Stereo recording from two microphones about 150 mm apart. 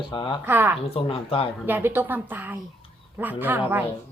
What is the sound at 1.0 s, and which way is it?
Speech, 40° left (ahead or behind).